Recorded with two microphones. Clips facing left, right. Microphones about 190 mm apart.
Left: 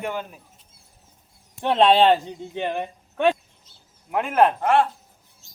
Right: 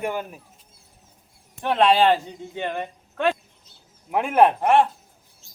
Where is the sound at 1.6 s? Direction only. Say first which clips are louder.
Left 1 dB; 25° left (ahead or behind).